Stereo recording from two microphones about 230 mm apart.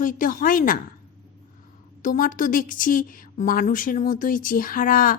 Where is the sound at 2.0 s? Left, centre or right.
Left.